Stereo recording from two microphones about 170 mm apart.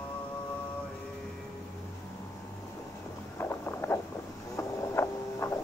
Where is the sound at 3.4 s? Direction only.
10° left (ahead or behind).